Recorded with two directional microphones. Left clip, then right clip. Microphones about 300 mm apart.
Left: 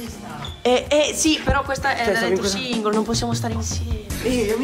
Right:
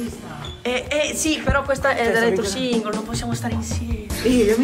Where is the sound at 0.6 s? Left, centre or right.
Centre.